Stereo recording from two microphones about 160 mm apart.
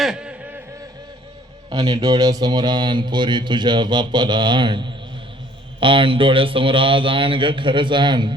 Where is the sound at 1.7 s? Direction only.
20° right (ahead or behind).